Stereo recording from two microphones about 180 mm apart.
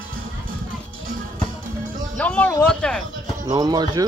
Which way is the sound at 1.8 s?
50° right (ahead or behind).